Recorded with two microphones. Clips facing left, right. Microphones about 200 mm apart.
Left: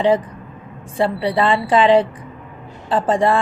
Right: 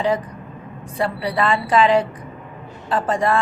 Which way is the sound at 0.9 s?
30° left (ahead or behind).